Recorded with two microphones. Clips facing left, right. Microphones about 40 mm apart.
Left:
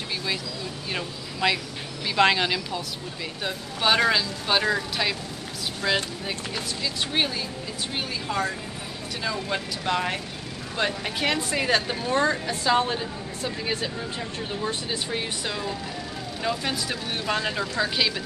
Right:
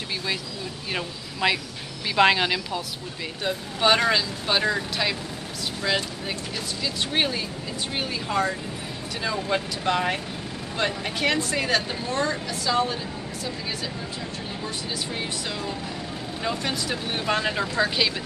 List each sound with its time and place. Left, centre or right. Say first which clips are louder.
0.9 s speech: right 2 dB; centre
7.1 s speech: right 2 dB; centre
12.1 s a woman's voice: left 3 dB; left
16.4 s speech: even; centre